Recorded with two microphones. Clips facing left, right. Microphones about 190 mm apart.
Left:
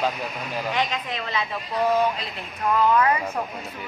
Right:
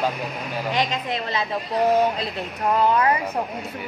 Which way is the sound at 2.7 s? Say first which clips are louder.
Even; 25° right (ahead or behind).